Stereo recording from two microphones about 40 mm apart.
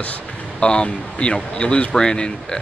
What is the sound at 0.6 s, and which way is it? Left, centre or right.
Speech, left.